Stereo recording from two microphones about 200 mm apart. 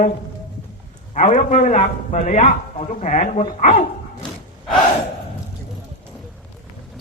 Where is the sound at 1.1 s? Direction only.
35° left (ahead or behind).